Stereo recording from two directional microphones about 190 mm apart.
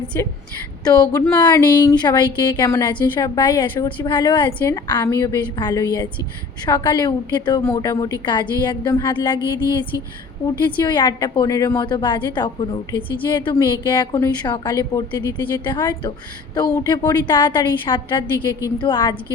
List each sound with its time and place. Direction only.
0.1 s a woman's voice: 15° left (ahead or behind)